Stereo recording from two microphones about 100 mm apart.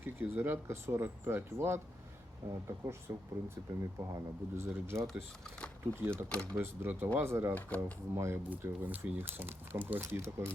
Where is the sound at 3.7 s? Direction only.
20° right (ahead or behind).